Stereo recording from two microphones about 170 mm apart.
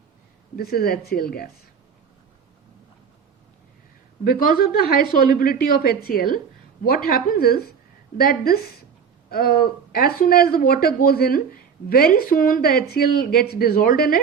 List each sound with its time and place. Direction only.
0.5 s a woman's voice: 65° left (ahead or behind)
4.2 s a woman's voice: 60° left (ahead or behind)